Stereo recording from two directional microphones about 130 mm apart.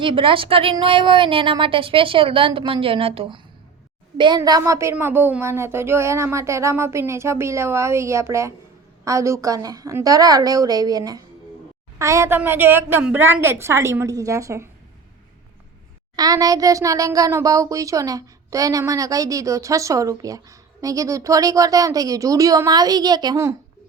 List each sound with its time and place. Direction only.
0.0 s a woman's voice: 40° right (ahead or behind)
4.4 s a child's voice: 30° right (ahead or behind)
16.1 s a child's voice: 30° right (ahead or behind)